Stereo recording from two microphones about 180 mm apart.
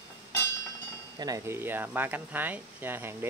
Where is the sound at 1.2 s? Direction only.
15° right (ahead or behind).